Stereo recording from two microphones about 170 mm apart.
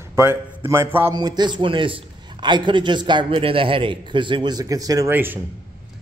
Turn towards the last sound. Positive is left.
turn(degrees=-10)  # may be behind; listen again after turning